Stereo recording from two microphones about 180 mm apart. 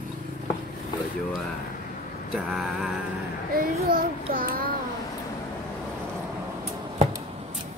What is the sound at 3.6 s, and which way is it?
Child singing, 50° right (ahead or behind).